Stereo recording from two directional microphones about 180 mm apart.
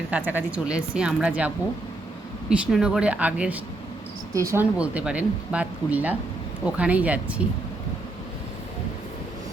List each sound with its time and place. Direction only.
0.1 s speech: 10° right (ahead or behind)